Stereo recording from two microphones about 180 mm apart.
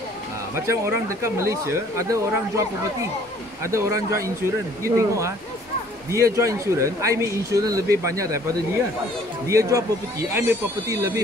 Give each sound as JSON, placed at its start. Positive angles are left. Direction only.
{"t": 0.7, "sound": "speech", "side_deg": -15}
{"t": 9.5, "sound": "speech", "side_deg": -20}